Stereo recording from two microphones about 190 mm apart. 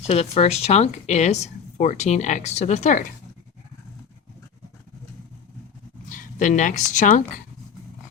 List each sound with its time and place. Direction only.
0.1 s speech: 30° left (ahead or behind)
6.1 s speech: 45° left (ahead or behind)